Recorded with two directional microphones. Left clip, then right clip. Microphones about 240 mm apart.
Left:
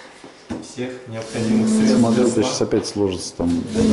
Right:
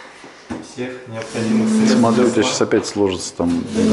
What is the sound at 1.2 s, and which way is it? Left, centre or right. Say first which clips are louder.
Speech: right 1 dB; centre.